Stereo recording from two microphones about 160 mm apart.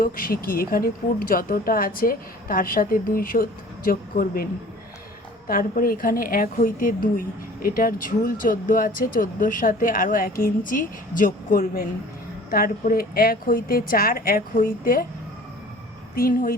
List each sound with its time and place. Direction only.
0.0 s a woman's voice: 60° left (ahead or behind)
5.5 s a woman's voice: 65° left (ahead or behind)
16.1 s a woman's voice: 65° left (ahead or behind)